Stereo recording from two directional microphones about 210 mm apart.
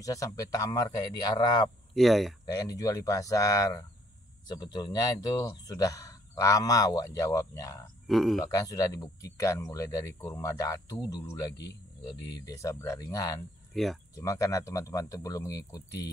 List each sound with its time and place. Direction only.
0.0 s speech: 15° left (ahead or behind)
2.0 s speech: centre (ahead or behind)
2.4 s speech: 15° left (ahead or behind)
8.1 s speech: centre (ahead or behind)
8.5 s speech: 15° left (ahead or behind)
13.7 s speech: centre (ahead or behind)
14.1 s speech: 15° left (ahead or behind)